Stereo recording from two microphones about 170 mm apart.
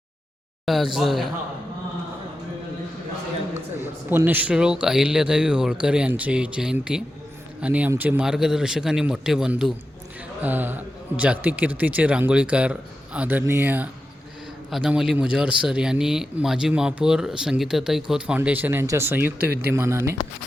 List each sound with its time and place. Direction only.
0.6 s a man's voice: centre (ahead or behind)
3.8 s a man's voice: 15° right (ahead or behind)
19.4 s speech: 70° right (ahead or behind)
19.7 s a man's voice: 15° right (ahead or behind)